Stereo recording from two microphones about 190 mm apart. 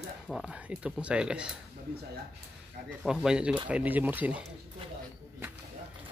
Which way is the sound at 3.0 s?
5° right (ahead or behind).